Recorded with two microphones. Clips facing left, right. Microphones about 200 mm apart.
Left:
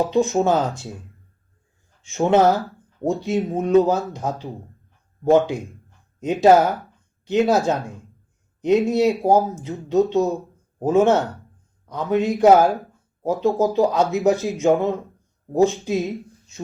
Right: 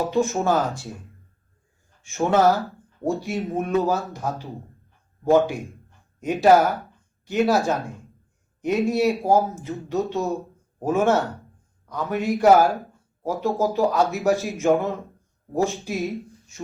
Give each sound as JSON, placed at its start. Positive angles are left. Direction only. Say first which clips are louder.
{"t": 0.0, "sound": "speech", "louder": "left 3 dB", "side_deg": 20}
{"t": 2.0, "sound": "speech", "louder": "left 2 dB", "side_deg": 20}
{"t": 8.9, "sound": "speech", "louder": "left 3 dB", "side_deg": 20}